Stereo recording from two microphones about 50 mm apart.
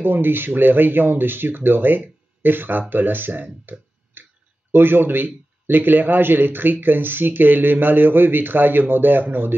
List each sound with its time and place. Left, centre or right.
0.0 s a man's voice: right
3.6 s a sound: right
4.7 s a man's voice: right